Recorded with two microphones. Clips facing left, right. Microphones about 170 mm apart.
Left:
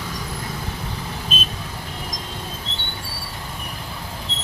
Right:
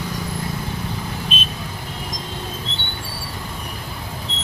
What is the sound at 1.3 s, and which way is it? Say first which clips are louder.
Vehicle: even; 45° left (ahead or behind).